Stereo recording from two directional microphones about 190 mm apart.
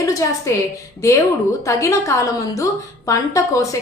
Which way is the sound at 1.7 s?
15° left (ahead or behind).